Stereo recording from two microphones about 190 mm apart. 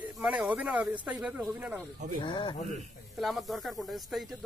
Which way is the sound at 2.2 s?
25° left (ahead or behind).